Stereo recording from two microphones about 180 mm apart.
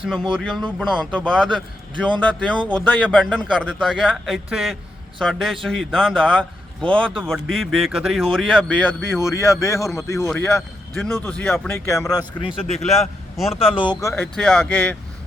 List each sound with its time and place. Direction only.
0.0 s a man's voice: 5° left (ahead or behind); by 12.2 s 20° left (ahead or behind)
12.6 s a man's voice: 35° left (ahead or behind)
12.9 s a man's voice: centre (ahead or behind)
13.5 s a man's voice: 30° left (ahead or behind)
14.1 s speech: 5° left (ahead or behind)